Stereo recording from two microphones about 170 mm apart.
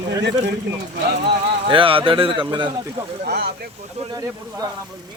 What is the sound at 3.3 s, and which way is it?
Speech, 70° right (ahead or behind).